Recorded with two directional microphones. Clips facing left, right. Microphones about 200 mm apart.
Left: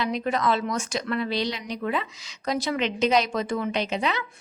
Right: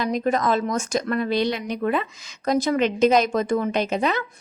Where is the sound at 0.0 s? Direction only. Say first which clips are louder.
Right 3 dB; 45° right (ahead or behind).